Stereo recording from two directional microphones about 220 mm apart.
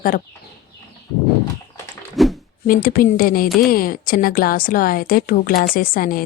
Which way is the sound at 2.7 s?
40° left (ahead or behind).